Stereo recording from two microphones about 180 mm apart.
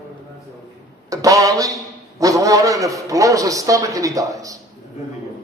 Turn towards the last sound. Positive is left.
turn(degrees=-20)  # may be behind; listen again after turning